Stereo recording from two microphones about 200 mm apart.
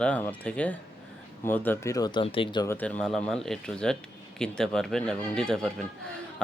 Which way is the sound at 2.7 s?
5° left (ahead or behind).